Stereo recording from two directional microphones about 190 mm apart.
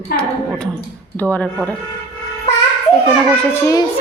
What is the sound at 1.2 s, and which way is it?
Speech, 10° left (ahead or behind).